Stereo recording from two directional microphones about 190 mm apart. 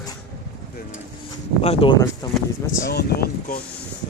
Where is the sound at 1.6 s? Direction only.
30° left (ahead or behind).